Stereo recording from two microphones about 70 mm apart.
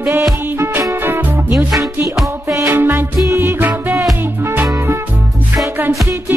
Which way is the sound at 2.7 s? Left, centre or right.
Right.